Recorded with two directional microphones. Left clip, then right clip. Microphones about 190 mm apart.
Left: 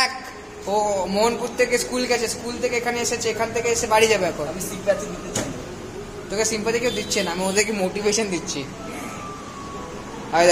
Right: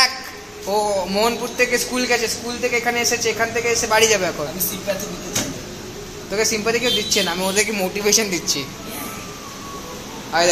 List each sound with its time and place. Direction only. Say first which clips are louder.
0.7 s a man's voice: right 1 dB; 10° right (ahead or behind)
4.0 s a woman's voice: right 2 dB; centre (ahead or behind)
6.3 s a man's voice: right 3 dB; 15° right (ahead or behind)
7.4 s a woman's voice: right 2 dB; centre (ahead or behind)
10.3 s speech: left 1 dB; 20° left (ahead or behind)